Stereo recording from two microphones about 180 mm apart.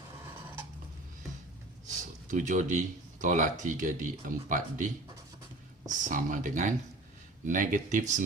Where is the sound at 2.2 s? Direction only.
45° right (ahead or behind).